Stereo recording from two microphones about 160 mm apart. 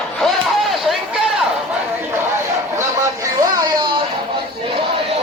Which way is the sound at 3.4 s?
20° right (ahead or behind).